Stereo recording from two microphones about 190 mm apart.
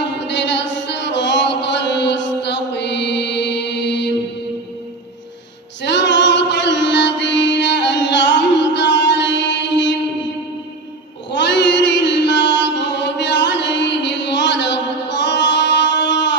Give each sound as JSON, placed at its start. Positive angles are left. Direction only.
{"t": 0.0, "sound": "music", "side_deg": 65}
{"t": 5.8, "sound": "music", "side_deg": 70}
{"t": 11.3, "sound": "chant", "side_deg": 65}